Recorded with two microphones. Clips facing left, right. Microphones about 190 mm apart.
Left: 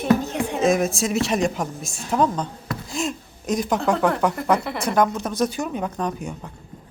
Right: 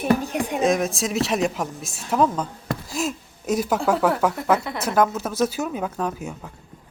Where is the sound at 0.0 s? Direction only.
10° right (ahead or behind).